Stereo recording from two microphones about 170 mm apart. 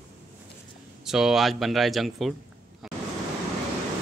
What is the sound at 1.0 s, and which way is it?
Speech, 5° right (ahead or behind).